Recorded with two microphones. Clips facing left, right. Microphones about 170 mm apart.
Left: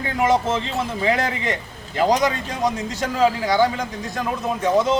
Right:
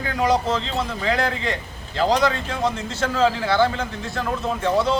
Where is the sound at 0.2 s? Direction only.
25° left (ahead or behind).